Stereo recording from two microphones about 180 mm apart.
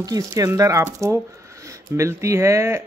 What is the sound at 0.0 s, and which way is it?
Speech, 20° right (ahead or behind).